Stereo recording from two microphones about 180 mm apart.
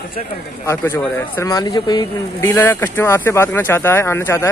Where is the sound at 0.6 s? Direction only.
15° left (ahead or behind).